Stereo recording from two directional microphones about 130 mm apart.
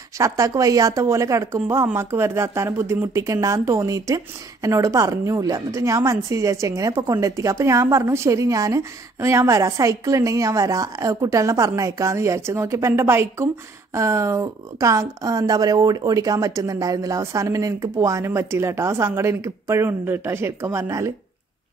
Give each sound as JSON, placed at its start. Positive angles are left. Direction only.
{"t": 0.2, "sound": "speech", "side_deg": -25}